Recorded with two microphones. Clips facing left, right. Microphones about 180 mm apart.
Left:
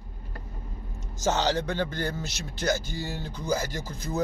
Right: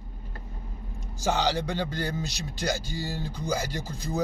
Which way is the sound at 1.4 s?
15° right (ahead or behind).